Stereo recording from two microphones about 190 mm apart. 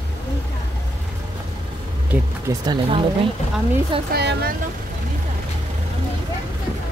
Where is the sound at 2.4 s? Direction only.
20° right (ahead or behind).